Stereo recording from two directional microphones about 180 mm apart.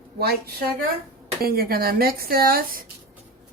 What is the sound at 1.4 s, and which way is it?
A woman's voice, 55° right (ahead or behind).